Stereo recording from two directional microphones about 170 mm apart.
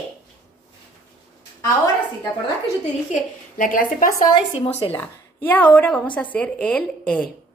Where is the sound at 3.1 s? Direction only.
55° left (ahead or behind).